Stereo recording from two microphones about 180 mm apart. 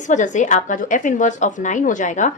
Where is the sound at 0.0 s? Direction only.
45° left (ahead or behind).